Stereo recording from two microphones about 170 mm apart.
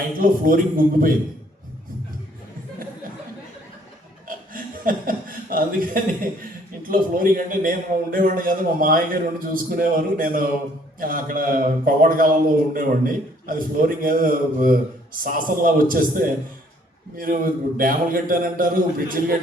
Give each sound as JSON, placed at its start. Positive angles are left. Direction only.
{"t": 0.2, "sound": "a man's voice", "side_deg": -55}
{"t": 4.3, "sound": "chuckle", "side_deg": -55}
{"t": 6.4, "sound": "a man's voice", "side_deg": -55}